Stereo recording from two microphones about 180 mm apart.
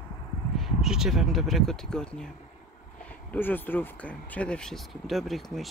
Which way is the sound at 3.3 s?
10° left (ahead or behind).